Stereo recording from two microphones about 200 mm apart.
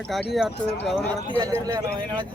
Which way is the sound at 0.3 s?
5° right (ahead or behind).